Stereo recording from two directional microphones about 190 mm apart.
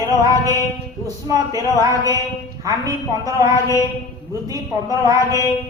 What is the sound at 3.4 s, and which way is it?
Mantra, 15° left (ahead or behind).